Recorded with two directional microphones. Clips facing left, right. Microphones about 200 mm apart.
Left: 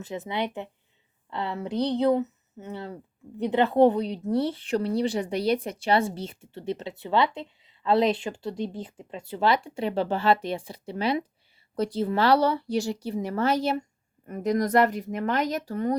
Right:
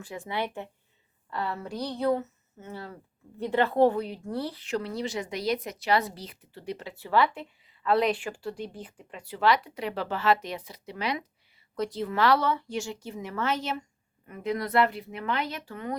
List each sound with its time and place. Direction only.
0.0 s a woman's voice: 20° left (ahead or behind); by 16.0 s 40° left (ahead or behind)